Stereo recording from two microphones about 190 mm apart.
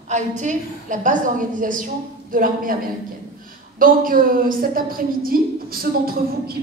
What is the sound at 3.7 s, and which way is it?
A woman's voice, 45° right (ahead or behind).